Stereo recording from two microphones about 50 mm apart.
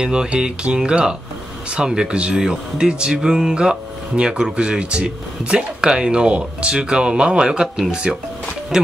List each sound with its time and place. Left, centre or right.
0.0 s speech: centre